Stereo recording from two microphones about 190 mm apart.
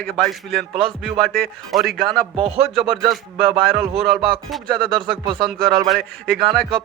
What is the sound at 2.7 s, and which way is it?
Speech, centre (ahead or behind).